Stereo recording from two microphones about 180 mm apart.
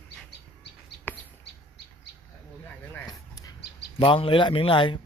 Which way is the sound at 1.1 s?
10° left (ahead or behind).